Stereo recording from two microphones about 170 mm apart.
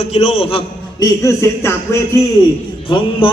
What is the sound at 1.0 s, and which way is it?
Speech, 15° left (ahead or behind).